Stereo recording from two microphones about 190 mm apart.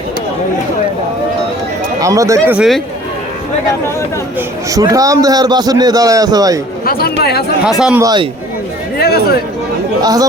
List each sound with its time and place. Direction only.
2.0 s speech: 15° right (ahead or behind)
2.6 s speech: centre (ahead or behind)
4.4 s a man's voice: 20° right (ahead or behind)
6.8 s speech: 55° left (ahead or behind)
7.8 s speech: 5° right (ahead or behind)
8.0 s a man's voice: 25° right (ahead or behind)
9.0 s chatter: 55° left (ahead or behind)
10.0 s a man's voice: 20° right (ahead or behind)